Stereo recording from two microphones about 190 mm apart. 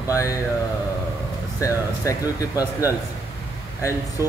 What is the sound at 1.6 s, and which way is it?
Speech, 15° left (ahead or behind).